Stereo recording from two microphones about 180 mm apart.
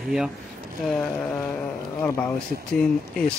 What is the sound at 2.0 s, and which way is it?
Speech, 10° left (ahead or behind).